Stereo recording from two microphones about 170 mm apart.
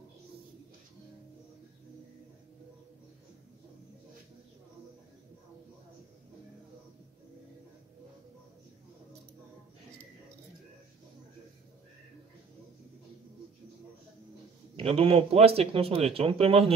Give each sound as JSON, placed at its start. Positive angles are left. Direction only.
{"t": 14.8, "sound": "speech", "side_deg": -35}